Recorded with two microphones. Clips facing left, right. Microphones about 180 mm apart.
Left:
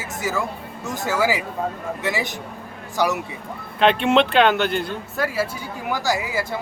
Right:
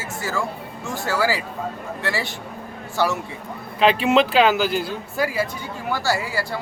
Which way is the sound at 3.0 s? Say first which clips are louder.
Even; 15° left (ahead or behind).